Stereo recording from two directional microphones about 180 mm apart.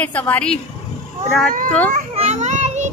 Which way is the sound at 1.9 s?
40° right (ahead or behind).